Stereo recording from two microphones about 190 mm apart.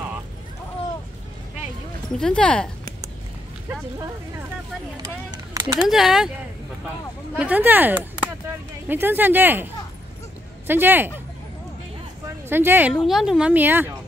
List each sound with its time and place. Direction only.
2.1 s a woman's voice: 5° left (ahead or behind)
5.0 s a sound: 20° right (ahead or behind)
5.9 s a woman's voice: centre (ahead or behind)
7.3 s speech: 10° right (ahead or behind)
10.7 s speech: 10° right (ahead or behind)
12.4 s a woman's voice: 10° right (ahead or behind)